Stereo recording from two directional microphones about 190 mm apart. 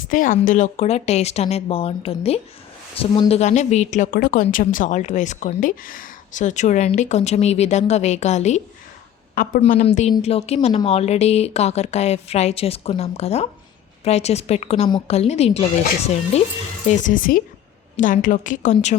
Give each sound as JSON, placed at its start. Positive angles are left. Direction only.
{"t": 0.1, "sound": "a woman's voice", "side_deg": 45}
{"t": 9.3, "sound": "a woman's voice", "side_deg": 45}
{"t": 9.6, "sound": "a woman's voice", "side_deg": 35}
{"t": 17.0, "sound": "a woman's voice", "side_deg": 45}